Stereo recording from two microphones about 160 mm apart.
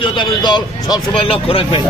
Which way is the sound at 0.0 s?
30° left (ahead or behind).